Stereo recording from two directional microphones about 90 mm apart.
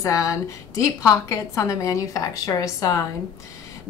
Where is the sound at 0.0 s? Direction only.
35° left (ahead or behind).